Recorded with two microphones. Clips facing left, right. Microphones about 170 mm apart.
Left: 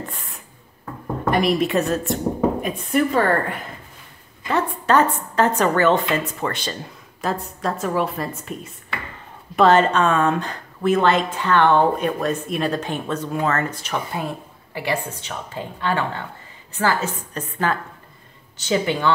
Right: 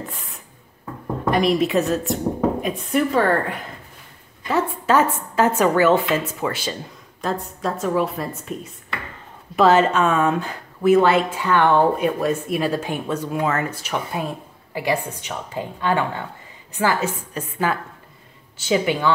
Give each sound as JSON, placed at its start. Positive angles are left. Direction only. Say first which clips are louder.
{"t": 0.1, "sound": "a sound", "louder": "even", "side_deg": 0}
{"t": 1.3, "sound": "a woman's voice", "louder": "right 1 dB", "side_deg": 0}
{"t": 9.6, "sound": "speech", "louder": "even", "side_deg": -5}